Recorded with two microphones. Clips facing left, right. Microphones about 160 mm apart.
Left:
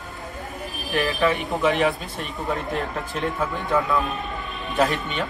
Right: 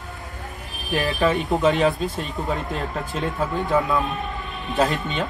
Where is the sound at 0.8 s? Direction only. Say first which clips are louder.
Right 1 dB; 20° right (ahead or behind).